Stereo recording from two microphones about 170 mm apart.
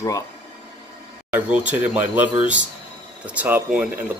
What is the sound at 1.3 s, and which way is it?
Speech, 10° right (ahead or behind).